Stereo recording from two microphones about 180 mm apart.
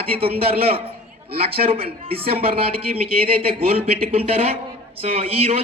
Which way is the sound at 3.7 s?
30° right (ahead or behind).